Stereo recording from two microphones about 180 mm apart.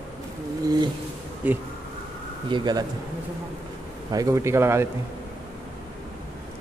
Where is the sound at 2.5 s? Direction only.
20° right (ahead or behind).